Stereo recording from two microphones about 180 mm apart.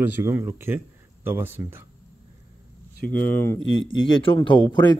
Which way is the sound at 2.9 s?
50° left (ahead or behind).